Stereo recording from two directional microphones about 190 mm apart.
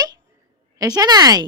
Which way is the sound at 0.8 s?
20° right (ahead or behind).